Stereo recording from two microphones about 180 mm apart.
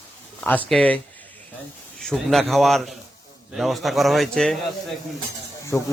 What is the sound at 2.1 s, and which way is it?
A man's voice, centre (ahead or behind).